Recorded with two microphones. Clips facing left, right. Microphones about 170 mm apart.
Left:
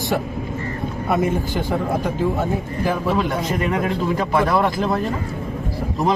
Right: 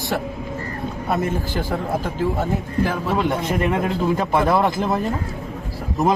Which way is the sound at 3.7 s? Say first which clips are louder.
Even; 25° right (ahead or behind).